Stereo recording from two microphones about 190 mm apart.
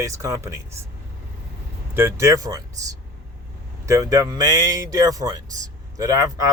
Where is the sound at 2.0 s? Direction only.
15° right (ahead or behind).